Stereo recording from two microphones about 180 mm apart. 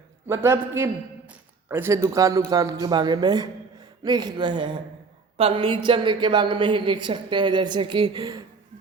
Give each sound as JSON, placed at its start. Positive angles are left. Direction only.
{"t": 0.3, "sound": "a man's voice", "side_deg": -15}
{"t": 1.3, "sound": "a sound", "side_deg": -10}
{"t": 2.0, "sound": "a woman's voice", "side_deg": -20}